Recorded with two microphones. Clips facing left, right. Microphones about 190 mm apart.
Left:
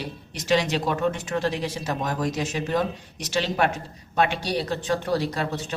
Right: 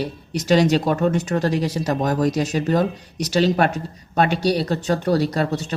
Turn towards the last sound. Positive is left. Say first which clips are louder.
# right 6 dB
turn(degrees=-40)  # may be behind; listen again after turning